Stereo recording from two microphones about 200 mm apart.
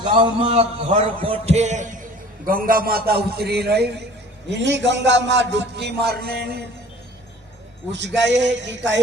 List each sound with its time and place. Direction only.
0.0 s a man's voice: 25° right (ahead or behind); by 6.6 s 50° right (ahead or behind)
7.9 s a man's voice: 60° right (ahead or behind)